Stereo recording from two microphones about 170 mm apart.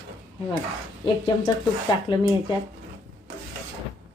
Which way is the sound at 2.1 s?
30° left (ahead or behind).